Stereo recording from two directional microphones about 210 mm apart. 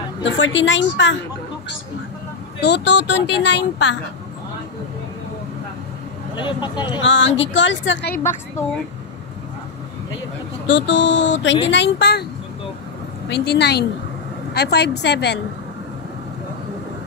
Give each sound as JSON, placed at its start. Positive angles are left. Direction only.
{"t": 0.2, "sound": "speech", "side_deg": 60}
{"t": 2.6, "sound": "speech", "side_deg": 55}
{"t": 6.3, "sound": "speech", "side_deg": 20}
{"t": 7.0, "sound": "speech", "side_deg": 60}
{"t": 10.7, "sound": "a woman's voice", "side_deg": 60}
{"t": 13.3, "sound": "a woman's voice", "side_deg": 55}